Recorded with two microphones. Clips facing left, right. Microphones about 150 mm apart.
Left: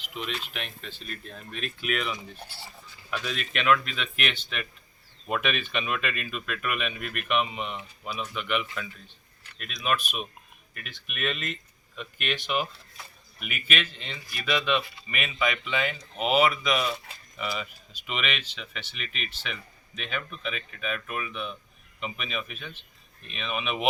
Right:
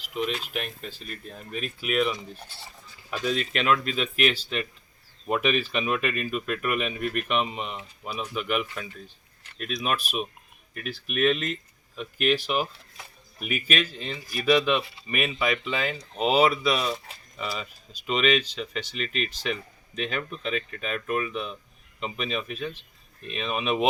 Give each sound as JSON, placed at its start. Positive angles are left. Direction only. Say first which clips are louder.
{"t": 0.1, "sound": "speech", "louder": "right 6 dB", "side_deg": -45}
{"t": 0.8, "sound": "speech", "louder": "right 2 dB", "side_deg": -5}
{"t": 3.1, "sound": "speech", "louder": "right 5 dB", "side_deg": -35}
{"t": 8.0, "sound": "speech", "louder": "right 2 dB", "side_deg": -10}
{"t": 8.4, "sound": "speech", "louder": "right 3 dB", "side_deg": -40}
{"t": 11.2, "sound": "speech", "louder": "right 8 dB", "side_deg": 0}
{"t": 12.3, "sound": "speech", "louder": "right 3 dB", "side_deg": -35}